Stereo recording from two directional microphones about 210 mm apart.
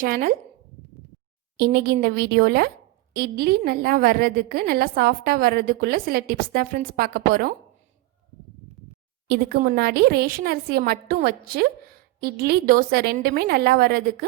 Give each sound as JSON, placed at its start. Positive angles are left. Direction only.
{"t": 0.0, "sound": "a woman's voice", "side_deg": -40}
{"t": 1.5, "sound": "a woman's voice", "side_deg": -50}
{"t": 9.2, "sound": "a woman's voice", "side_deg": -50}